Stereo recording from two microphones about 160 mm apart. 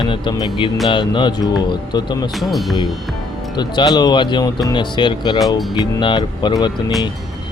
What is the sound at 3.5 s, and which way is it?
Speech, 25° left (ahead or behind).